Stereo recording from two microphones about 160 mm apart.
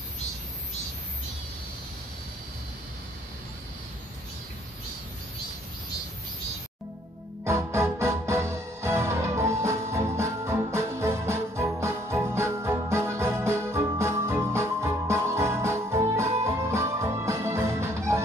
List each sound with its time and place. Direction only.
7.4 s music: 15° right (ahead or behind)